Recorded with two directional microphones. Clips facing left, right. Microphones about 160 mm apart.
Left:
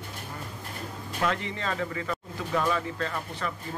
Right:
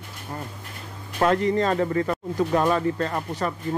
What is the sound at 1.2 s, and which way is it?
Speech, 40° right (ahead or behind).